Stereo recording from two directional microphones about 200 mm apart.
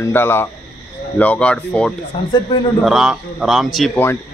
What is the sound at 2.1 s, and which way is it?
Speech, 25° left (ahead or behind).